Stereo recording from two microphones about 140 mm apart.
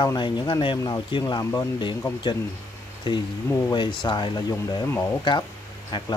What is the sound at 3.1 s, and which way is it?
Speech, 35° left (ahead or behind).